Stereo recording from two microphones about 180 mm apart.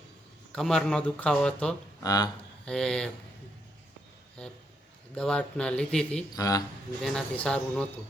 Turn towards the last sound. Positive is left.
turn(degrees=5)  # may be behind; listen again after turning